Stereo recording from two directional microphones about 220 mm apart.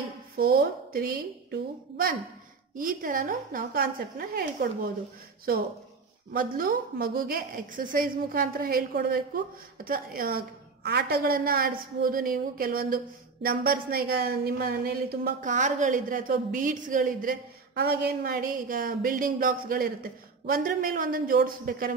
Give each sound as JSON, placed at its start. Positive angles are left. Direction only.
{"t": 0.4, "sound": "a woman's voice", "side_deg": -40}
{"t": 6.3, "sound": "a woman's voice", "side_deg": -40}